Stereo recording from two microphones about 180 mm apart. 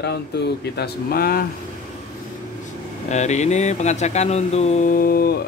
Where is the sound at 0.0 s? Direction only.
65° left (ahead or behind).